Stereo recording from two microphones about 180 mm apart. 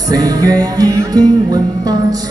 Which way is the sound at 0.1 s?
20° right (ahead or behind).